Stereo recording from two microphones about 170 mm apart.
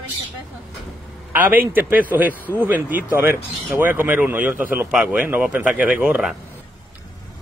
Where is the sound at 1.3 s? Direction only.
10° right (ahead or behind).